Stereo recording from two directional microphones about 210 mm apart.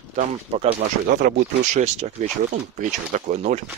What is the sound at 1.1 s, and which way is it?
Speech, 50° right (ahead or behind).